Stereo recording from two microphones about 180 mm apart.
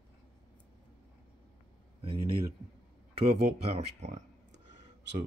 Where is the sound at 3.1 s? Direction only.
35° right (ahead or behind).